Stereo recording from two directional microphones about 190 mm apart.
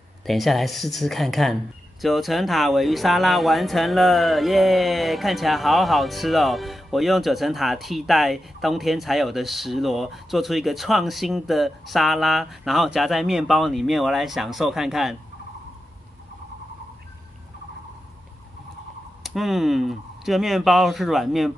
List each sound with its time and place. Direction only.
0.3 s speech: centre (ahead or behind)
19.2 s speech: centre (ahead or behind)